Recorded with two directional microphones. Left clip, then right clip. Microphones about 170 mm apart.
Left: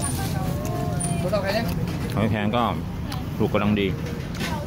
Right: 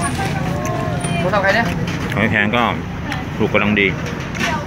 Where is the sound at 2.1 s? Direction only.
10° left (ahead or behind).